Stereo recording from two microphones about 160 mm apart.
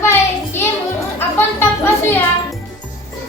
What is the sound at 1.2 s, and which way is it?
Music, 15° left (ahead or behind).